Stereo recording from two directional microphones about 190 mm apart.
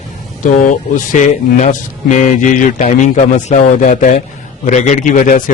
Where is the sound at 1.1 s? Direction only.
40° left (ahead or behind).